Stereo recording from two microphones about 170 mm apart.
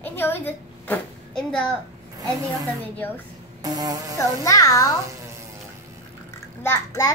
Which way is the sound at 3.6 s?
20° right (ahead or behind).